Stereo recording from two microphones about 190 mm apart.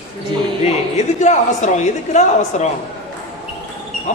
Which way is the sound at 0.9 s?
35° left (ahead or behind).